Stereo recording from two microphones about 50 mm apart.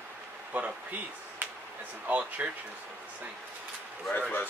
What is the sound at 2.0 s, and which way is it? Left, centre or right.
Speech, right.